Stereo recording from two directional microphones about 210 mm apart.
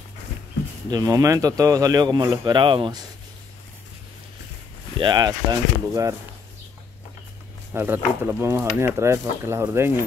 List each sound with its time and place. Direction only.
0.8 s speech: 20° right (ahead or behind)
4.9 s speech: 20° right (ahead or behind)
7.7 s speech: 10° right (ahead or behind)